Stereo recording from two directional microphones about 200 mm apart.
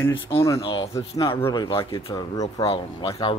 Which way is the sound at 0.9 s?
15° left (ahead or behind).